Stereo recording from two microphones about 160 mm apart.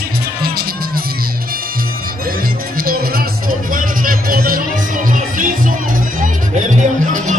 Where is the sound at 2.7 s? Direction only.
65° right (ahead or behind).